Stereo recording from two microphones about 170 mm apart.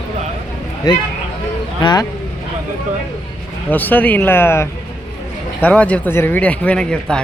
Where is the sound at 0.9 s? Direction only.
25° left (ahead or behind).